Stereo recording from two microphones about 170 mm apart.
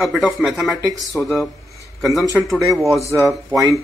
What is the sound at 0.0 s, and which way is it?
A man's voice, centre (ahead or behind).